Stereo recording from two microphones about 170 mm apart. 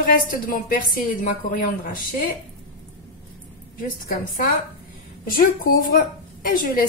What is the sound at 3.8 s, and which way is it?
A woman's voice, 55° left (ahead or behind).